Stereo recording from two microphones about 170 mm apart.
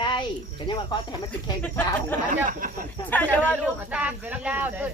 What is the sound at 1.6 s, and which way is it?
Speech, 10° left (ahead or behind).